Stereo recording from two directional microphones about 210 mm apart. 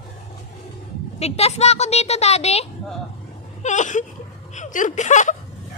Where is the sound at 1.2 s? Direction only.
30° left (ahead or behind).